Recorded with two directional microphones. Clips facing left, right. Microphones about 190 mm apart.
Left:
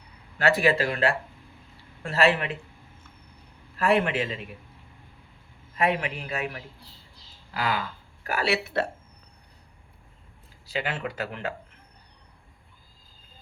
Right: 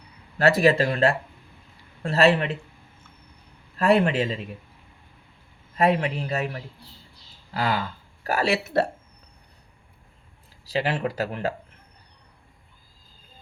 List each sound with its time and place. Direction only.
0.3 s speech: 40° right (ahead or behind)
3.8 s speech: 35° right (ahead or behind)
5.7 s speech: 35° right (ahead or behind)
10.7 s speech: 35° right (ahead or behind)